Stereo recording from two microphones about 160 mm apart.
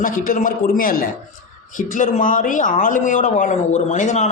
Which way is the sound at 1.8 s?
55° left (ahead or behind).